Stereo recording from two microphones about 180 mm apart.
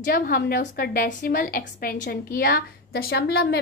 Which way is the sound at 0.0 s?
60° left (ahead or behind).